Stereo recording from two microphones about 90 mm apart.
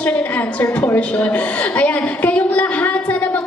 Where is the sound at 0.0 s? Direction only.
15° left (ahead or behind).